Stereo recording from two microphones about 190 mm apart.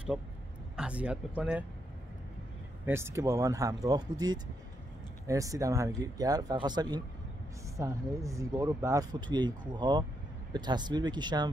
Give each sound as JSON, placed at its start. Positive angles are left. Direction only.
{"t": 0.7, "sound": "speech", "side_deg": -5}
{"t": 2.8, "sound": "speech", "side_deg": -15}